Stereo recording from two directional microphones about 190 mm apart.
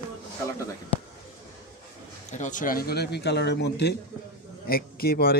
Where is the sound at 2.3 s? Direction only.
40° left (ahead or behind); by 3.9 s 60° left (ahead or behind).